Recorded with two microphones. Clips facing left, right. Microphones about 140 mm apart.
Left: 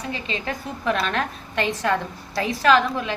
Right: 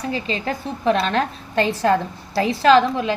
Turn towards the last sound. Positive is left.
turn(degrees=-30)  # may be behind; listen again after turning